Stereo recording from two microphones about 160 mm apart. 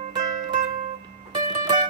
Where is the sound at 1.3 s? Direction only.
25° right (ahead or behind).